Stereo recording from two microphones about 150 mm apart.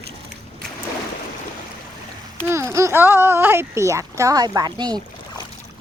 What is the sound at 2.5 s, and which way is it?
Speech, 20° right (ahead or behind).